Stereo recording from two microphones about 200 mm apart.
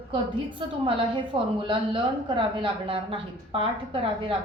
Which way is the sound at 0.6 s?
25° right (ahead or behind).